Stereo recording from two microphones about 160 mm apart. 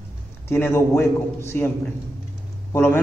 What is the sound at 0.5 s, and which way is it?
A man's voice, 15° left (ahead or behind).